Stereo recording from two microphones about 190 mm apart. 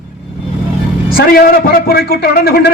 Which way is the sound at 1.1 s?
50° left (ahead or behind).